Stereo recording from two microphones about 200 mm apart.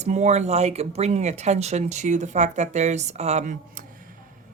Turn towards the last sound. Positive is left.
turn(degrees=-40)  # may be behind; listen again after turning